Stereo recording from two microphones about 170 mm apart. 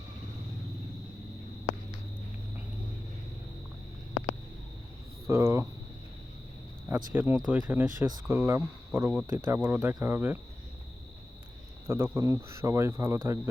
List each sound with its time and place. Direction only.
5.3 s speech: 15° right (ahead or behind)
6.9 s speech: 10° right (ahead or behind)
11.9 s speech: 15° right (ahead or behind)